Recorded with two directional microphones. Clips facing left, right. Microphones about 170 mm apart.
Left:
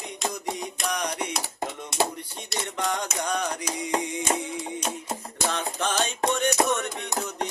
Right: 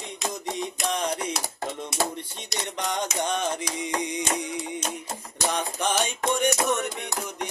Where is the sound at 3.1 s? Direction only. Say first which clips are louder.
Right 1 dB; 20° right (ahead or behind).